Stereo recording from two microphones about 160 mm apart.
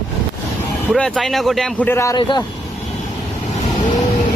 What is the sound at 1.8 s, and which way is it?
Speech, 20° left (ahead or behind).